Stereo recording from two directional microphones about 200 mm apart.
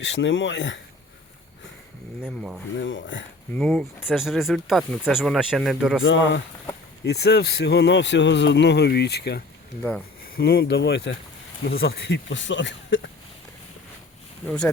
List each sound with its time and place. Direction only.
0.0 s speech: 70° left (ahead or behind)
2.2 s speech: 5° right (ahead or behind)
2.7 s speech: 70° left (ahead or behind)
3.5 s speech: 5° left (ahead or behind)
6.0 s speech: 65° left (ahead or behind)
7.0 s speech: 55° left (ahead or behind)
14.4 s speech: 5° left (ahead or behind)